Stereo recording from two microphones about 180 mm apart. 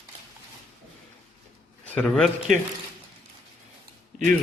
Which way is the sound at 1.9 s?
5° left (ahead or behind).